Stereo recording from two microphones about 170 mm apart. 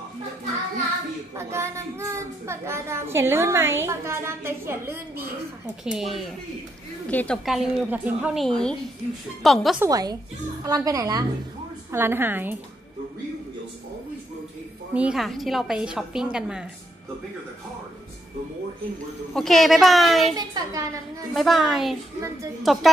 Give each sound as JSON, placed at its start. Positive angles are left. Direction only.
{"t": 1.3, "sound": "a child's voice", "side_deg": -15}
{"t": 5.9, "sound": "a woman's voice", "side_deg": 0}
{"t": 7.4, "sound": "a woman's voice", "side_deg": -5}
{"t": 8.5, "sound": "a woman's voice", "side_deg": 5}
{"t": 9.8, "sound": "a woman's voice", "side_deg": -20}
{"t": 15.0, "sound": "a woman's voice", "side_deg": -5}
{"t": 19.3, "sound": "a woman's voice", "side_deg": 0}
{"t": 20.3, "sound": "a woman's voice", "side_deg": -20}
{"t": 21.3, "sound": "a woman's voice", "side_deg": 0}